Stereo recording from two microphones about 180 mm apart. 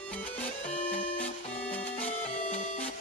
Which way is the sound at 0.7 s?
45° left (ahead or behind).